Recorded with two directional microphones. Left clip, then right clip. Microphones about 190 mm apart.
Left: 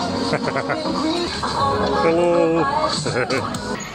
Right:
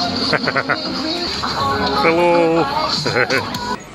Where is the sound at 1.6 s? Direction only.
25° left (ahead or behind).